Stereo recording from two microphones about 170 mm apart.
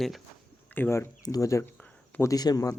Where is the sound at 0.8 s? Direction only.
15° left (ahead or behind).